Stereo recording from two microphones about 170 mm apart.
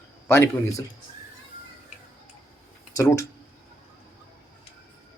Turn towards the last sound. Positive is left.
turn(degrees=15)  # may be behind; listen again after turning